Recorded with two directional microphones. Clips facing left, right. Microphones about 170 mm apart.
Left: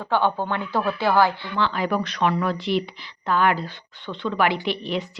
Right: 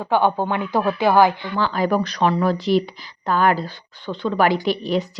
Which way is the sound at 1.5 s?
40° right (ahead or behind).